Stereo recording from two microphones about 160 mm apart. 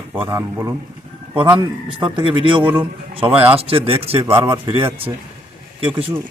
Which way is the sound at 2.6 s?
10° right (ahead or behind).